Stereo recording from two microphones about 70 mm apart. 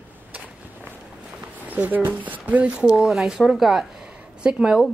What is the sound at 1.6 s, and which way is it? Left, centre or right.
Speech, right.